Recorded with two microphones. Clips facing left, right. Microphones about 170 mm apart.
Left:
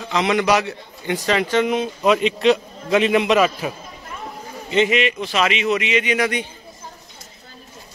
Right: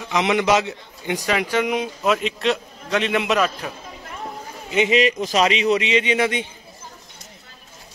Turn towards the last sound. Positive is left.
turn(degrees=-25)  # may be behind; listen again after turning